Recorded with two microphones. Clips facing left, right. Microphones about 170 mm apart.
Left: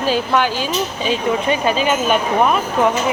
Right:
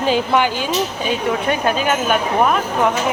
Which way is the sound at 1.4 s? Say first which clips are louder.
Left 1 dB; 55° right (ahead or behind).